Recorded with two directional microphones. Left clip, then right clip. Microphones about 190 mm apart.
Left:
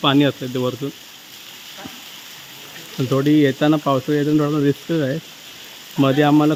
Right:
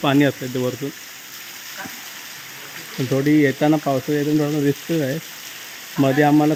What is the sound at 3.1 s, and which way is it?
Speech, 10° left (ahead or behind).